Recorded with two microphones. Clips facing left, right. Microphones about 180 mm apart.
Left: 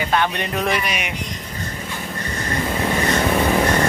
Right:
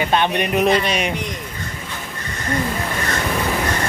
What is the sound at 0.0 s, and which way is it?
Speech, 20° right (ahead or behind).